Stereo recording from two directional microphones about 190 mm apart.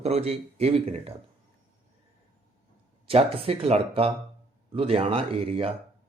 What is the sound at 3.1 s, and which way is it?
Speech, 30° right (ahead or behind).